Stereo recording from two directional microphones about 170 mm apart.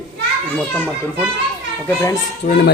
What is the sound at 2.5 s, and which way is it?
Speech, 65° left (ahead or behind).